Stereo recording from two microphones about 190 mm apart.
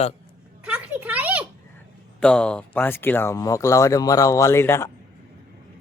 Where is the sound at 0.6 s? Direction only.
5° right (ahead or behind).